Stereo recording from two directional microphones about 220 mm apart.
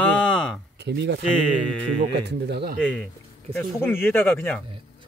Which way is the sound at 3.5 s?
5° left (ahead or behind).